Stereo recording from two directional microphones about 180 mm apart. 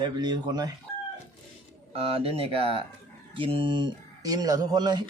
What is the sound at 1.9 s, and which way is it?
Speech, 30° right (ahead or behind).